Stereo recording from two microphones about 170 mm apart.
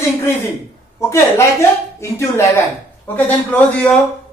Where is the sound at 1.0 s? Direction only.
15° left (ahead or behind).